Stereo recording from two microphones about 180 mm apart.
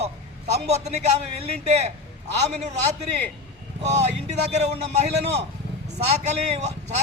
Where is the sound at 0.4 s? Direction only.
40° right (ahead or behind).